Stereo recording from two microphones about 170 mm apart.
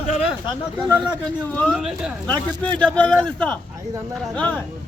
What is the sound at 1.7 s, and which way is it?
A man's voice, 5° right (ahead or behind).